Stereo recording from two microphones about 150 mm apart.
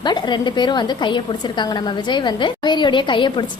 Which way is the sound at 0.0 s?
30° left (ahead or behind).